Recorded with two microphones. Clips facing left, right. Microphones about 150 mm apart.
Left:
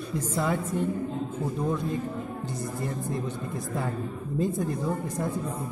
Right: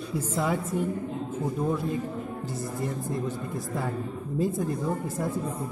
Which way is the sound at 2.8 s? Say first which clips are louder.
Right 2 dB; centre (ahead or behind).